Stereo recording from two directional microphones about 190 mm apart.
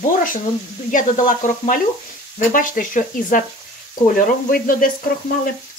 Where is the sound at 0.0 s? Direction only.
45° left (ahead or behind).